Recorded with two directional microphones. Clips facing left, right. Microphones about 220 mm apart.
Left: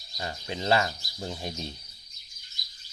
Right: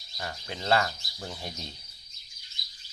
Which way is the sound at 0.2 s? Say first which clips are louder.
Left 3 dB; 20° left (ahead or behind).